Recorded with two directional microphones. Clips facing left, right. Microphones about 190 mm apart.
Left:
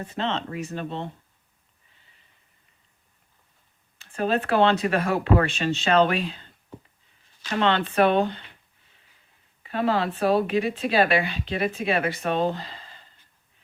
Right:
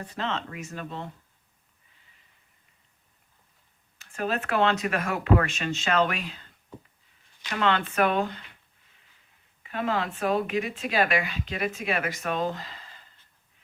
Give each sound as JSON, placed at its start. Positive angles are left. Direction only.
{"t": 0.0, "sound": "speech", "side_deg": 25}
{"t": 3.9, "sound": "speech", "side_deg": 30}
{"t": 7.5, "sound": "speech", "side_deg": 30}
{"t": 9.6, "sound": "speech", "side_deg": 35}